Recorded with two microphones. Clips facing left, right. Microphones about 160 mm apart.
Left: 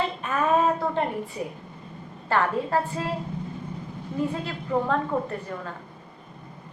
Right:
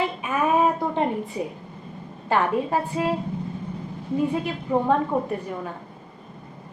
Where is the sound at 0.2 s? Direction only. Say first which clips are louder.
Right 1 dB; 10° right (ahead or behind).